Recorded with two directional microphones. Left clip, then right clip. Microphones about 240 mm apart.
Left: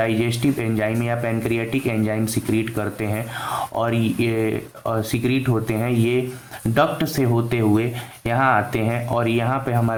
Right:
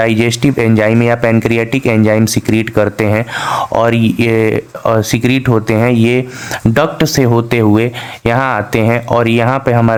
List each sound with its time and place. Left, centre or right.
0.0 s speech: right